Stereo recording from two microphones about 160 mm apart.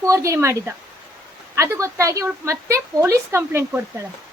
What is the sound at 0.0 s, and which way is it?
A woman's voice, 20° right (ahead or behind).